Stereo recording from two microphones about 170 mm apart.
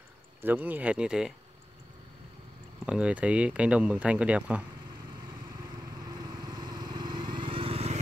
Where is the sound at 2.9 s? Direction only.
5° right (ahead or behind).